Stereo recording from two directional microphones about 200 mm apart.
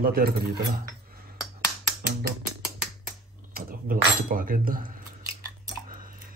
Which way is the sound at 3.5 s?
45° right (ahead or behind).